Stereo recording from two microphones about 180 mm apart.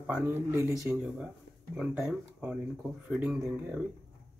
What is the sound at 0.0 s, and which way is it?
Speech, 10° right (ahead or behind).